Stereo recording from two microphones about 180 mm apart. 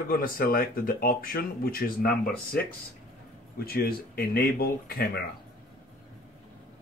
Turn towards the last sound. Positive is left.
turn(degrees=55)  # may be behind; listen again after turning